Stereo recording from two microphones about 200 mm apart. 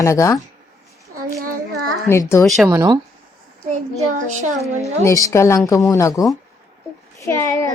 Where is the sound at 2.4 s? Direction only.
Centre (ahead or behind).